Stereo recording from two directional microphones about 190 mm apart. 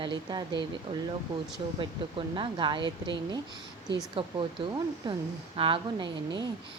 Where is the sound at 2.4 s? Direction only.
25° right (ahead or behind).